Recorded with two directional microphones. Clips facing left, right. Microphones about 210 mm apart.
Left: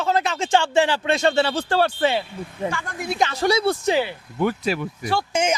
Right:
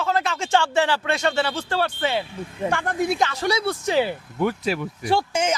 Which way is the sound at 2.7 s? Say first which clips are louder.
Right 5 dB; 60° right (ahead or behind).